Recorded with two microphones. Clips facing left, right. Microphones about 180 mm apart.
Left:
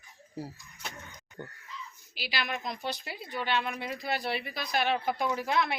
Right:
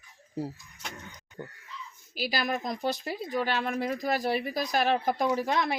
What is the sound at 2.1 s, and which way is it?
Speech, 45° right (ahead or behind).